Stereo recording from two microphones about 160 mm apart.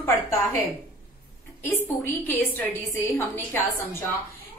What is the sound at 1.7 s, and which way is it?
A woman's voice, 10° left (ahead or behind).